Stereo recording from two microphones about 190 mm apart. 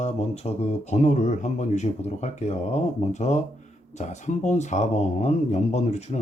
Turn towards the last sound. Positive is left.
turn(degrees=35)  # may be behind; listen again after turning